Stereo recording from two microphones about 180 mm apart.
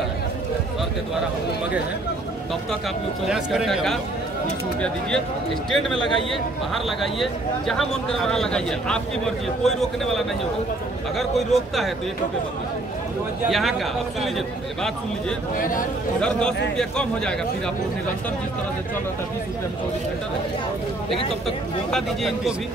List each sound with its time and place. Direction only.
3.3 s speech: 5° right (ahead or behind)
5.7 s speech: centre (ahead or behind)
13.5 s speech: centre (ahead or behind)
15.5 s speech: 50° left (ahead or behind)
16.2 s speech: 5° left (ahead or behind)
21.9 s speech: centre (ahead or behind)